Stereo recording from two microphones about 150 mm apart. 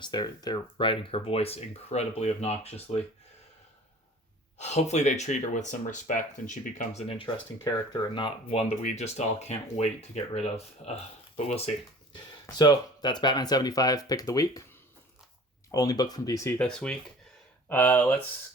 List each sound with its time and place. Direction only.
0.0 s speech: 30° left (ahead or behind); by 3.0 s 45° left (ahead or behind)
4.5 s speech: 50° left (ahead or behind)
7.6 s speech: 30° left (ahead or behind)
12.1 s speech: 30° left (ahead or behind)
15.7 s speech: 25° left (ahead or behind)
16.6 s speech: 5° left (ahead or behind)